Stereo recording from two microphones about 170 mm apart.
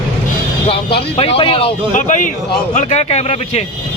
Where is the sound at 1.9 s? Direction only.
50° left (ahead or behind).